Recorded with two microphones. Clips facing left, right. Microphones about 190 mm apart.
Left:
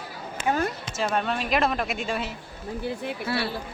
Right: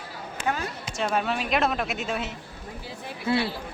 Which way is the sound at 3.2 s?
20° right (ahead or behind).